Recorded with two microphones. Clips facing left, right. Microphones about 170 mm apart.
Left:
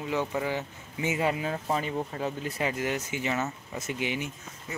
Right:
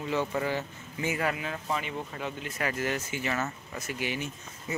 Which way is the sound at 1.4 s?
35° left (ahead or behind).